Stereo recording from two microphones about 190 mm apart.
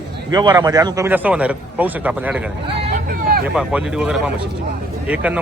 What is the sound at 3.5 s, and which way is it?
A man's voice, 5° right (ahead or behind).